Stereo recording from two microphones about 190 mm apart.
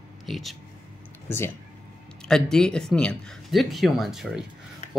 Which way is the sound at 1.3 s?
10° left (ahead or behind).